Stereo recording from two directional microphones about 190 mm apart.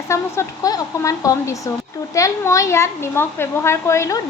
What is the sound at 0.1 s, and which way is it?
A woman's voice, 15° left (ahead or behind).